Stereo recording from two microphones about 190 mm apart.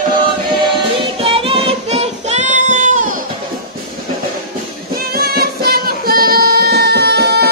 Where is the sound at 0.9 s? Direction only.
30° right (ahead or behind).